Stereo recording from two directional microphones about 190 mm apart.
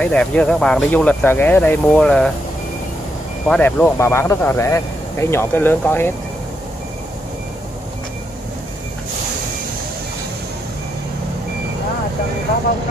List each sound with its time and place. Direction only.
0.0 s speech: 5° left (ahead or behind)
3.4 s speech: 5° left (ahead or behind)